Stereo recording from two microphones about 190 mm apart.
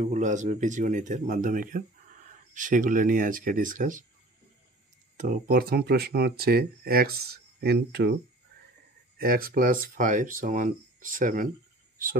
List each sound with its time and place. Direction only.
0.0 s speech: 40° right (ahead or behind)
5.1 s speech: 45° right (ahead or behind); by 8.2 s 60° right (ahead or behind)
9.2 s speech: 50° right (ahead or behind)